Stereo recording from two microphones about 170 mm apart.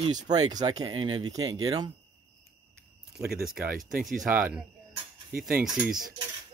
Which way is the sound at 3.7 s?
55° right (ahead or behind).